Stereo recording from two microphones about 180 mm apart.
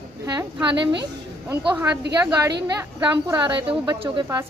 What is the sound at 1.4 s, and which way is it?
Speech, 20° right (ahead or behind).